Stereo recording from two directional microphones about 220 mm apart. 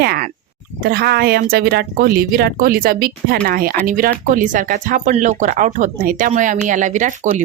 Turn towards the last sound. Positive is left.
turn(degrees=-35)  # may be behind; listen again after turning